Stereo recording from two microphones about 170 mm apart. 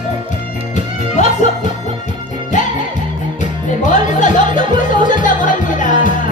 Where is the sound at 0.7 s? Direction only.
45° left (ahead or behind).